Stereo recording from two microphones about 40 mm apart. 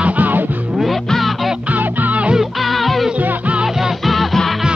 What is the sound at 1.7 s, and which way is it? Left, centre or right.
Music, right.